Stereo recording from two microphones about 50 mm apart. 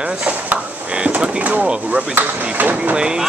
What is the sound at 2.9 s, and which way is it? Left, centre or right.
Speech, centre.